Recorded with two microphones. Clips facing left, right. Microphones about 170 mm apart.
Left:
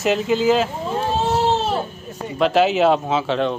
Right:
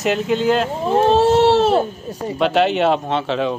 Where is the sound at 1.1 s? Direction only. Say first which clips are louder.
Right 6 dB; 75° right (ahead or behind).